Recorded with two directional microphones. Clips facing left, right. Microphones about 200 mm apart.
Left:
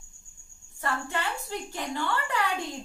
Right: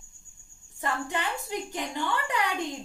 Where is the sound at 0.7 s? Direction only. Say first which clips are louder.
Right 1 dB; 20° right (ahead or behind).